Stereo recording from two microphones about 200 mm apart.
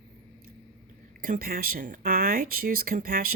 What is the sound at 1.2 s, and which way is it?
Speech, 45° right (ahead or behind).